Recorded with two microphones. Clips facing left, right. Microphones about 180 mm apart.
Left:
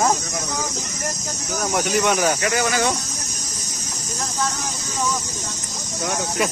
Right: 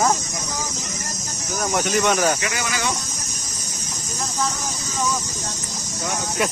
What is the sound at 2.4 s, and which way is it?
Speech, 45° left (ahead or behind).